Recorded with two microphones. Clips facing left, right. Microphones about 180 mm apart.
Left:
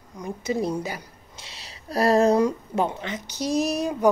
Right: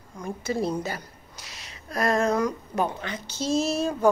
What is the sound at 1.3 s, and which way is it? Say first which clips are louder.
Speech: left 2 dB; 30° left (ahead or behind).